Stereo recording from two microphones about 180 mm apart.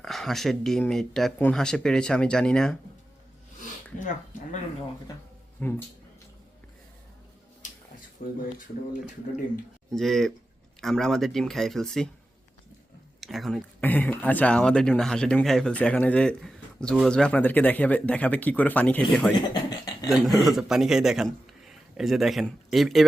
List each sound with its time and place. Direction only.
0.0 s speech: centre (ahead or behind)
3.9 s speech: 45° left (ahead or behind)
5.1 s speech: 20° left (ahead or behind)
5.6 s speech: 10° left (ahead or behind)
7.6 s a sound: 45° left (ahead or behind)
8.2 s speech: 50° left (ahead or behind)
9.9 s speech: centre (ahead or behind)
13.1 s speech: centre (ahead or behind)
19.4 s a sound: 20° left (ahead or behind)
20.1 s a man's voice: centre (ahead or behind)